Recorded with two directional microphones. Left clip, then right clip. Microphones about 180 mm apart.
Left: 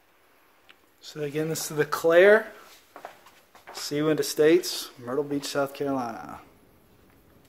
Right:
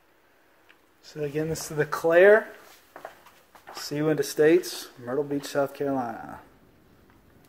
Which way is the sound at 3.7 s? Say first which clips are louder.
Left 1 dB; 10° left (ahead or behind).